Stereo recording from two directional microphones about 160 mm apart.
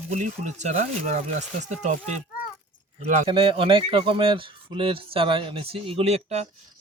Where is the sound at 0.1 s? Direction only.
45° right (ahead or behind).